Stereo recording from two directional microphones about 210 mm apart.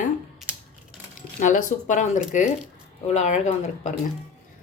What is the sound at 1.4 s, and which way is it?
Speech, 35° left (ahead or behind).